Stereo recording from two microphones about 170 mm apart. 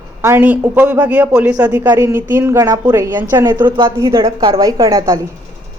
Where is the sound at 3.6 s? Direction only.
30° right (ahead or behind).